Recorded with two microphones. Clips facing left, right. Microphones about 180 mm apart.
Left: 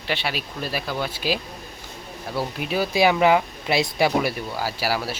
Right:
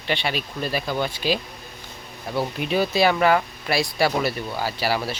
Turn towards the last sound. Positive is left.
turn(degrees=5)  # may be behind; listen again after turning